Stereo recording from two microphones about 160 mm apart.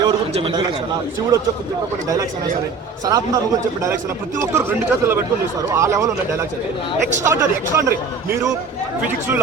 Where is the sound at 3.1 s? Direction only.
20° right (ahead or behind).